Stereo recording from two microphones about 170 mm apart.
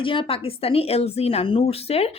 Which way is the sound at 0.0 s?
30° left (ahead or behind).